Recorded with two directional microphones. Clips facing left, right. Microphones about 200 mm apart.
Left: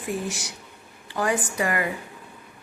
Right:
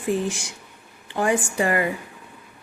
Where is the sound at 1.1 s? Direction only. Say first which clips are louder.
Right 3 dB; 25° right (ahead or behind).